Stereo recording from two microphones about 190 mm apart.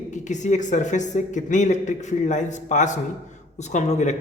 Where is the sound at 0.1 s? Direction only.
40° left (ahead or behind).